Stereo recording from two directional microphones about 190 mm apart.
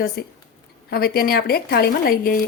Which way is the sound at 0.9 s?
55° left (ahead or behind).